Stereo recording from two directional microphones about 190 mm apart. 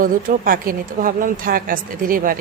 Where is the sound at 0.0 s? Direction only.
45° right (ahead or behind).